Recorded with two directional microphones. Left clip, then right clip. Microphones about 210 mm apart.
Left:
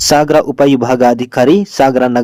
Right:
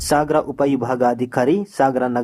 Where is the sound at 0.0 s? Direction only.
35° left (ahead or behind).